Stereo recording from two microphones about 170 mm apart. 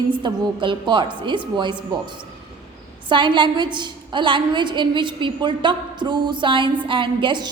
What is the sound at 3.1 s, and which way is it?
A woman's voice, 30° right (ahead or behind).